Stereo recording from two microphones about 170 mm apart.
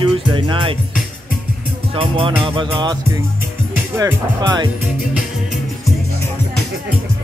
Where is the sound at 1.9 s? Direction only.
30° right (ahead or behind).